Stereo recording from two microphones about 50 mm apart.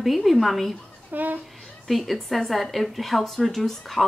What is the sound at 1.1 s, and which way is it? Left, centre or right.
Speech, right.